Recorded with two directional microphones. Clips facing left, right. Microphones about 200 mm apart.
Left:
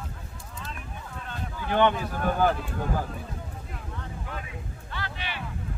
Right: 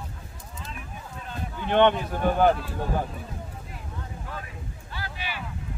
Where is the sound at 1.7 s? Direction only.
25° right (ahead or behind).